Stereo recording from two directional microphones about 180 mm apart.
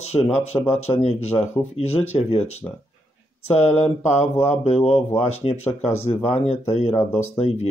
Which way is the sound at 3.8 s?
40° left (ahead or behind).